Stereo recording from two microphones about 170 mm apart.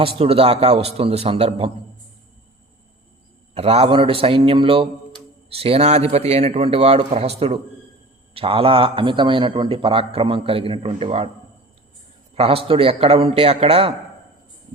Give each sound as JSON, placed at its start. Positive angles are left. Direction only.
{"t": 0.2, "sound": "a man's voice", "side_deg": -35}
{"t": 3.5, "sound": "a man's voice", "side_deg": -35}
{"t": 12.3, "sound": "a man's voice", "side_deg": -35}